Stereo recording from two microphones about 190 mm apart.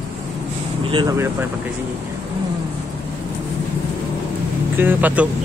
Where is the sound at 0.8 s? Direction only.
25° right (ahead or behind).